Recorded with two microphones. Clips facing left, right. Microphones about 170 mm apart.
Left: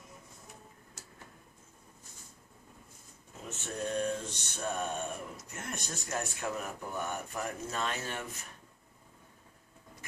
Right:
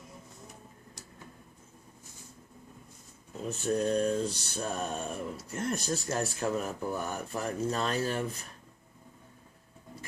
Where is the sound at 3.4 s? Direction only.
35° right (ahead or behind).